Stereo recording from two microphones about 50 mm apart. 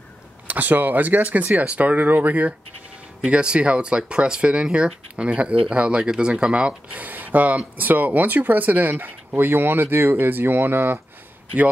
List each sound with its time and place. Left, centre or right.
0.5 s speech: right
3.3 s speech: right
7.1 s speech: right